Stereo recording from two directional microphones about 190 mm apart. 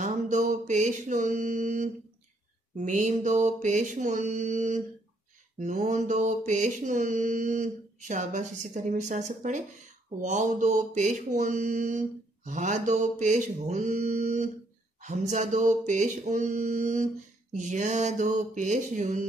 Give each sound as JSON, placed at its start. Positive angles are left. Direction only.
{"t": 0.0, "sound": "mantra", "side_deg": -40}